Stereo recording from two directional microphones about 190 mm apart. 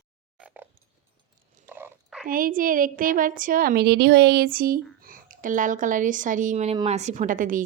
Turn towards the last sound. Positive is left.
turn(degrees=-45)  # may be behind; listen again after turning